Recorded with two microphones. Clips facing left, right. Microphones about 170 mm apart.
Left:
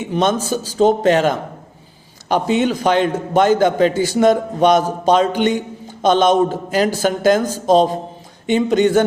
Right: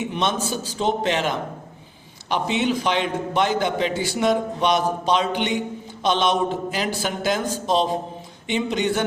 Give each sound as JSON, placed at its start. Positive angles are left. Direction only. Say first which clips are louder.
{"t": 0.1, "sound": "a man's voice", "louder": "left 7 dB", "side_deg": 45}